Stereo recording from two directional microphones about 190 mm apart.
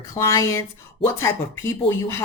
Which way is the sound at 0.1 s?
15° left (ahead or behind).